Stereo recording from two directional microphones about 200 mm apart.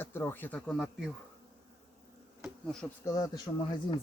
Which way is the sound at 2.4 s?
Centre (ahead or behind).